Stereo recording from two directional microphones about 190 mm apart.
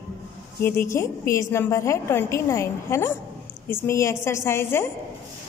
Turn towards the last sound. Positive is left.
turn(degrees=10)  # may be behind; listen again after turning